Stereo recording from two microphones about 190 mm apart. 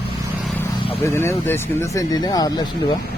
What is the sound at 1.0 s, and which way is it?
Speech, 15° left (ahead or behind).